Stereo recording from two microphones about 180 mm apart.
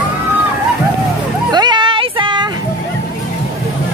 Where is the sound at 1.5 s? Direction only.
25° right (ahead or behind).